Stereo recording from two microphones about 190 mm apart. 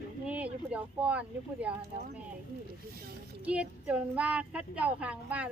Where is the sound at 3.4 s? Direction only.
5° right (ahead or behind).